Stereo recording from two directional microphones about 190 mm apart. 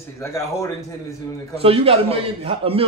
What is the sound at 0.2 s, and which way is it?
Speech, 15° left (ahead or behind).